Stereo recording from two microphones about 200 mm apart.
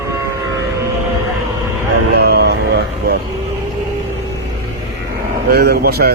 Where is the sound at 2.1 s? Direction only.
50° right (ahead or behind).